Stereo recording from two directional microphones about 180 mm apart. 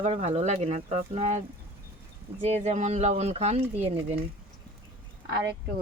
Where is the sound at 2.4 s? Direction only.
40° right (ahead or behind).